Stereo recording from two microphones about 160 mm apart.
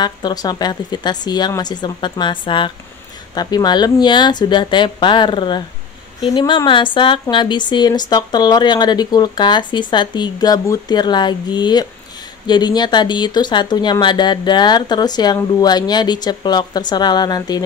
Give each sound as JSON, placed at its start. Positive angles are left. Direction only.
{"t": 0.0, "sound": "speech", "side_deg": 25}